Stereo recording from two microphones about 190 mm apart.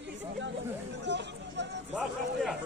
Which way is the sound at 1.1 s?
65° right (ahead or behind).